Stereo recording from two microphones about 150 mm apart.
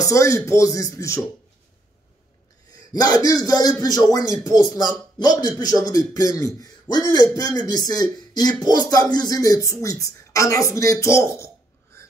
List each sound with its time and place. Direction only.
0.0 s a man's voice: 20° left (ahead or behind)
2.7 s a man's voice: 25° left (ahead or behind)